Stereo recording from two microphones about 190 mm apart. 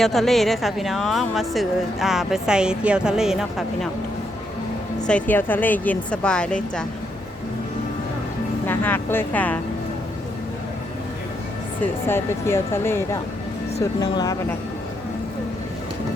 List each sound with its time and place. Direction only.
0.0 s a woman's voice: centre (ahead or behind)
5.0 s a woman's voice: 5° left (ahead or behind)
8.6 s a woman's voice: 10° left (ahead or behind)
12.0 s a woman's voice: 15° left (ahead or behind)
14.0 s speech: 20° left (ahead or behind)